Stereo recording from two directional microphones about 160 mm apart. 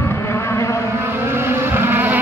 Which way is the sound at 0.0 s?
15° left (ahead or behind).